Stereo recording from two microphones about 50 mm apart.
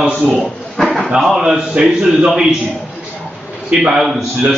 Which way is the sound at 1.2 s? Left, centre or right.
Centre.